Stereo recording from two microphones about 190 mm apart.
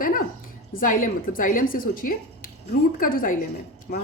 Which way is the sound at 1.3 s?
45° left (ahead or behind).